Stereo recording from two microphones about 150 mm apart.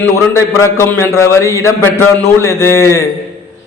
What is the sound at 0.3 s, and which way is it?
A man's voice, 15° left (ahead or behind).